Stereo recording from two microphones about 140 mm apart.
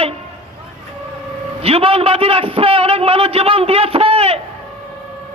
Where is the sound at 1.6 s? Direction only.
45° right (ahead or behind).